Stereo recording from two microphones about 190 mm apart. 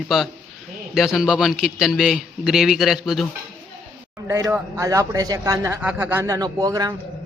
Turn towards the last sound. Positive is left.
turn(degrees=-20)  # may be behind; listen again after turning